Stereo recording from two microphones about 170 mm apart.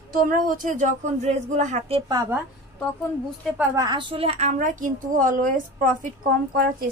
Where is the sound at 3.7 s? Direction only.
25° right (ahead or behind).